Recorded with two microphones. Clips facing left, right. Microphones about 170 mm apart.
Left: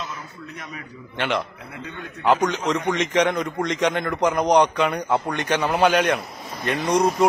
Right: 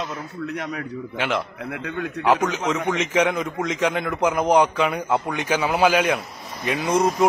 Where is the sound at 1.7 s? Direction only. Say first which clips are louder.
Right 6 dB; 75° right (ahead or behind).